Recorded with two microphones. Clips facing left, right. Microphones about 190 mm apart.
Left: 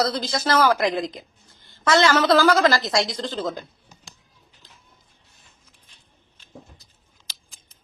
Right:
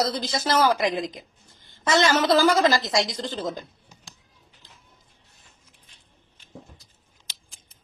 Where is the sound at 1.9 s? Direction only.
20° right (ahead or behind).